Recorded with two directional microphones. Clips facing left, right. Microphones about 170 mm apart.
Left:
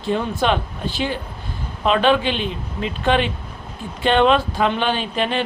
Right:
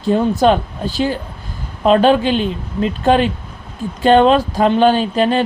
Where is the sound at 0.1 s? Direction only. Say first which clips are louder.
Right 7 dB; 40° right (ahead or behind).